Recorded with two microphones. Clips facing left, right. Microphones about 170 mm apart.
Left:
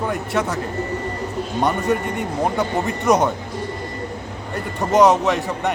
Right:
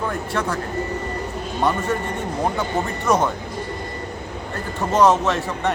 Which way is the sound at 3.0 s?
20° left (ahead or behind).